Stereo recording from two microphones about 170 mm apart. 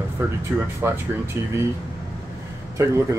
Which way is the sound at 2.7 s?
15° right (ahead or behind).